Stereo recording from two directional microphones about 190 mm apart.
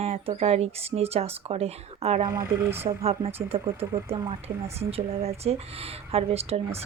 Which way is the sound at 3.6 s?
15° right (ahead or behind).